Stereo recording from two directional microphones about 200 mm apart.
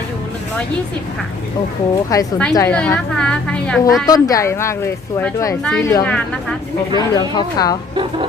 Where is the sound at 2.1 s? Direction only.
15° left (ahead or behind).